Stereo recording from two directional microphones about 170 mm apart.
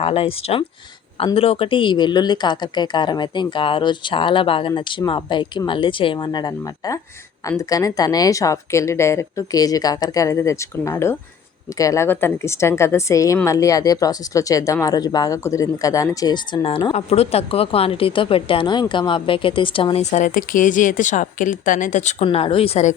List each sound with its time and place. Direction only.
0.0 s a woman's voice: 35° left (ahead or behind)
22.2 s speech: 30° left (ahead or behind)